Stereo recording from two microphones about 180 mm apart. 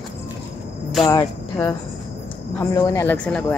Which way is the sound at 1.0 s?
20° left (ahead or behind).